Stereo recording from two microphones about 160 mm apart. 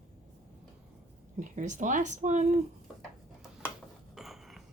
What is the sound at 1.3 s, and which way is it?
Speech, 50° right (ahead or behind).